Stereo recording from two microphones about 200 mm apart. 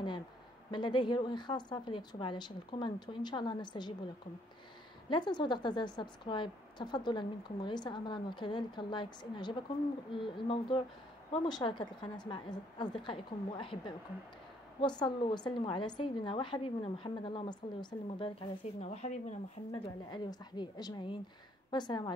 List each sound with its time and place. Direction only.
0.7 s a woman's voice: 25° left (ahead or behind)
5.1 s a woman's voice: 20° left (ahead or behind)
19.7 s a woman's voice: 20° left (ahead or behind)